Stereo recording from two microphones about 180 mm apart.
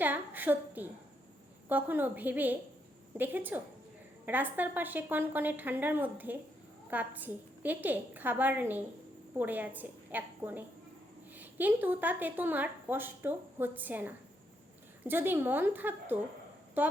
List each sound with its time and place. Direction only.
0.0 s speech: 10° right (ahead or behind)